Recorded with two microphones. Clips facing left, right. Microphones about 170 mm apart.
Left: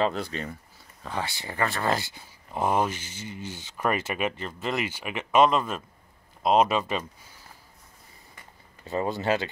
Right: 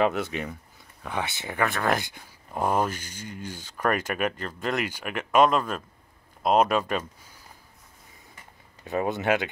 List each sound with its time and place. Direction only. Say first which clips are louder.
0.0 s speech: right 2 dB; 15° right (ahead or behind)
2.5 s speech: even; 5° left (ahead or behind)
3.3 s speech: even; 50° right (ahead or behind)
3.7 s speech: right 1 dB; 5° left (ahead or behind)
8.8 s speech: right 1 dB; 15° right (ahead or behind)